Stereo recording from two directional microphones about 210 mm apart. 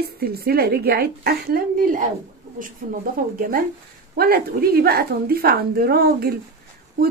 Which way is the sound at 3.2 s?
40° right (ahead or behind).